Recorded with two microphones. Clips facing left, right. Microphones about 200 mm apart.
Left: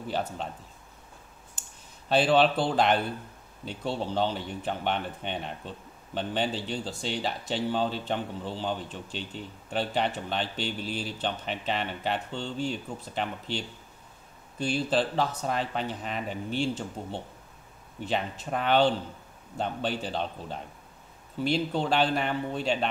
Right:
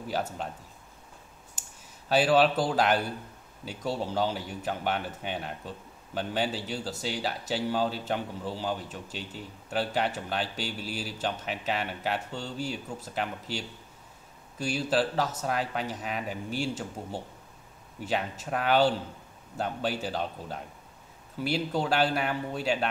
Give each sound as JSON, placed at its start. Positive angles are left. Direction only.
{"t": 0.1, "sound": "speech", "side_deg": -5}
{"t": 2.0, "sound": "speech", "side_deg": -5}
{"t": 3.8, "sound": "speech", "side_deg": -40}
{"t": 4.1, "sound": "speech", "side_deg": -5}